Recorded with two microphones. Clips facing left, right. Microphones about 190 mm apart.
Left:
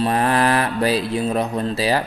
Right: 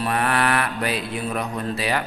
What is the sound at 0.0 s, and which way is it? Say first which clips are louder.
Mantra: left 4 dB; 30° left (ahead or behind).